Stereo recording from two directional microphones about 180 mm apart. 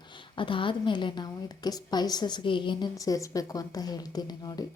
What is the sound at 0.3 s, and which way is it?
A woman's voice, 30° left (ahead or behind).